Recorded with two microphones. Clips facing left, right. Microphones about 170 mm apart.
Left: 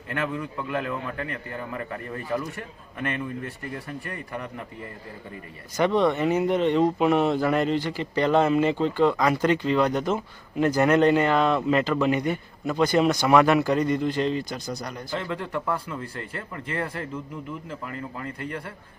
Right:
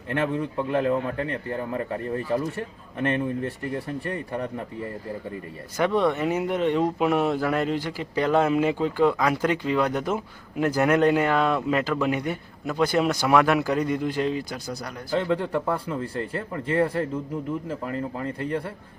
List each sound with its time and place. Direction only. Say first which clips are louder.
0.1 s a man's voice: right 4 dB; 30° right (ahead or behind)
5.7 s speech: left 1 dB; 5° right (ahead or behind)
15.1 s speech: right 7 dB; 35° right (ahead or behind)